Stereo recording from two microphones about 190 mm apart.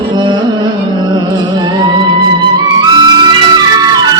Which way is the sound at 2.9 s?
25° right (ahead or behind).